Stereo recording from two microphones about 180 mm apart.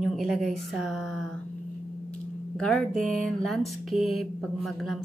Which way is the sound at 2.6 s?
5° left (ahead or behind).